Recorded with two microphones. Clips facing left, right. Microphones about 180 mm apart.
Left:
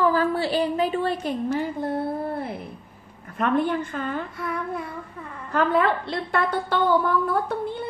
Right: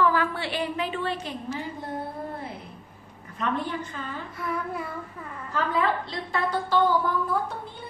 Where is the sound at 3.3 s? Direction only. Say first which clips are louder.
Left 7 dB; 55° left (ahead or behind).